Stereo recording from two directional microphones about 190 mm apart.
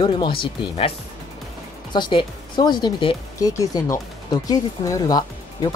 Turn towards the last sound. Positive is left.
turn(degrees=20)  # may be behind; listen again after turning